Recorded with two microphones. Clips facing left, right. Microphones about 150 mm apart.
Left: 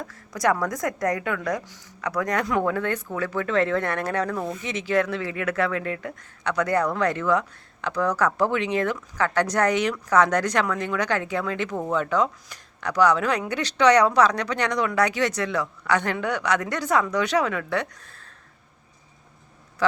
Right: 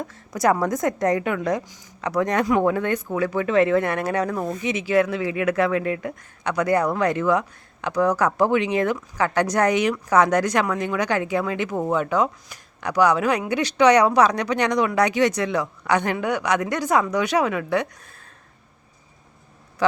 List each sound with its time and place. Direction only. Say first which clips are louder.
0.1 s a woman's voice: right 3 dB; 25° right (ahead or behind)